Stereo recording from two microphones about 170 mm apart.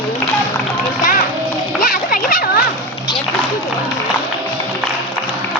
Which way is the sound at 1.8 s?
55° left (ahead or behind).